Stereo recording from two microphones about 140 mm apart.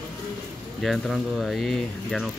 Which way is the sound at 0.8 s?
Centre (ahead or behind).